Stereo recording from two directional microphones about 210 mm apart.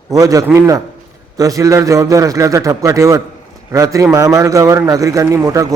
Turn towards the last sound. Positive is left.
turn(degrees=-15)  # may be behind; listen again after turning